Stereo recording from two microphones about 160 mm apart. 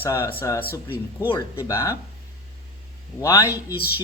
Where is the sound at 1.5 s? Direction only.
20° left (ahead or behind).